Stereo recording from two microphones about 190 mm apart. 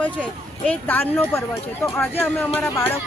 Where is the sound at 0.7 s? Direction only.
10° left (ahead or behind).